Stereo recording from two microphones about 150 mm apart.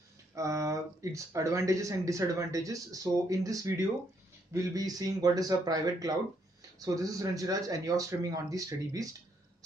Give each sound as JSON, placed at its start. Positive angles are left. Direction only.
{"t": 0.3, "sound": "speech", "side_deg": -20}